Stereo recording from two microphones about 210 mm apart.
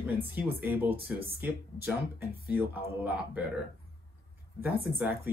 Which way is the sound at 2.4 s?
5° right (ahead or behind).